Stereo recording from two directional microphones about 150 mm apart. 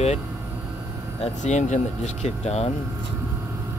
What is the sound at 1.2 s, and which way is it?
Speech, 50° left (ahead or behind).